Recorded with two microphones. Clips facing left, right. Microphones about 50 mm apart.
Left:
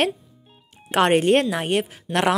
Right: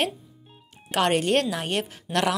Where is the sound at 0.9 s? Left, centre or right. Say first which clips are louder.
Left 5 dB; left.